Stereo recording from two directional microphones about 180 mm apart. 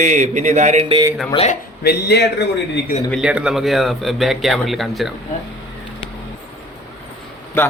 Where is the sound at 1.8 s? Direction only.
65° left (ahead or behind).